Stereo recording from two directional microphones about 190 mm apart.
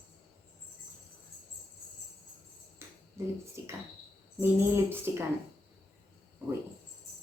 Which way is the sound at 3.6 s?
15° right (ahead or behind).